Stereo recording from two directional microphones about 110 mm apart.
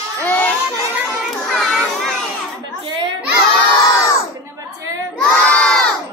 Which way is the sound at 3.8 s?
25° left (ahead or behind).